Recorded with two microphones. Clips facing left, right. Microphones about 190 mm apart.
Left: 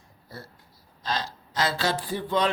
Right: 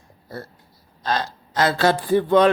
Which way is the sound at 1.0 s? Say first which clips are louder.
Right 6 dB; 55° right (ahead or behind).